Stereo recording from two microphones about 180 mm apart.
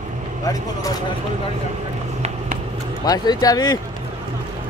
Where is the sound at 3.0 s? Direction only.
20° left (ahead or behind).